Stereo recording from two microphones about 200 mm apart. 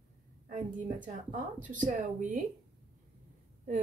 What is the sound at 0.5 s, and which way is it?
Speech, 40° right (ahead or behind).